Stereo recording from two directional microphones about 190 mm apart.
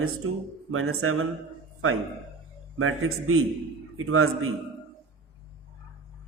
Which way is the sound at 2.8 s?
90° right.